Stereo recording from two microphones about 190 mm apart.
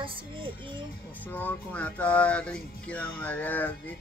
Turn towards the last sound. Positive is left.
turn(degrees=10)  # may be behind; listen again after turning